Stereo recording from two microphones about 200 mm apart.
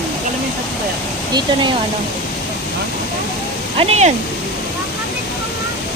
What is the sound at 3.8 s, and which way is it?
Speech, 35° right (ahead or behind).